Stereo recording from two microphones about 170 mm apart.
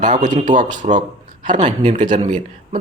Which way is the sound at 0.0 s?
45° right (ahead or behind).